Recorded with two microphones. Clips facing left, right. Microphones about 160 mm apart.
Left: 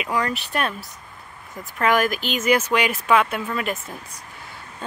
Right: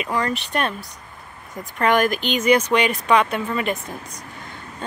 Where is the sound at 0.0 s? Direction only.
5° left (ahead or behind).